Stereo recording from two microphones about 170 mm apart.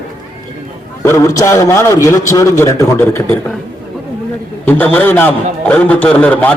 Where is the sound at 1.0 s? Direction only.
15° left (ahead or behind).